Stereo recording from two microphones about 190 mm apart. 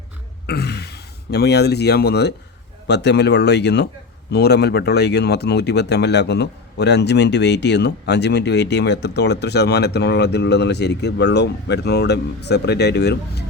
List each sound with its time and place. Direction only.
0.4 s speech: 60° left (ahead or behind)